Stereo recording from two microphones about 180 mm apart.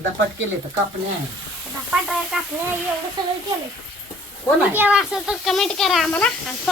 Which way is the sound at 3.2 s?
25° right (ahead or behind).